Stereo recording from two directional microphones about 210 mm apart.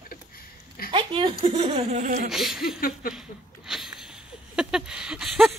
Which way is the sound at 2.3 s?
Centre (ahead or behind).